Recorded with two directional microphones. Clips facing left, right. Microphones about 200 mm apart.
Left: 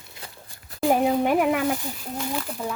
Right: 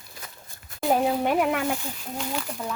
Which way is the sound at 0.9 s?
10° left (ahead or behind).